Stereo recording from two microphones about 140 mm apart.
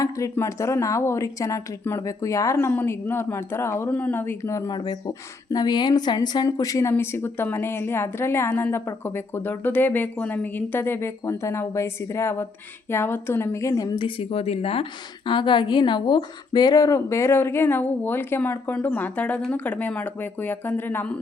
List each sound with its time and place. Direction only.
0.0 s speech: 20° left (ahead or behind); by 14.8 s 45° left (ahead or behind)
15.3 s speech: 35° left (ahead or behind); by 21.2 s 15° left (ahead or behind)